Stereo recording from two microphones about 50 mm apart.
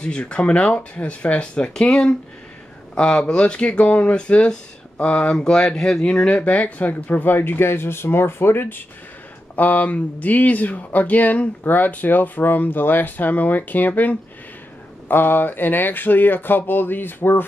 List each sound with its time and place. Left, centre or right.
0.0 s speech: left
6.2 s speech: left
9.6 s speech: left